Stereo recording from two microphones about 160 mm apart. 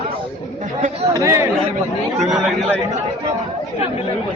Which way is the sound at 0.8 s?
50° right (ahead or behind).